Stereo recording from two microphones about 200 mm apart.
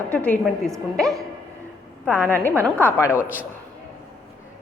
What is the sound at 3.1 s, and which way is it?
Speech, 10° right (ahead or behind).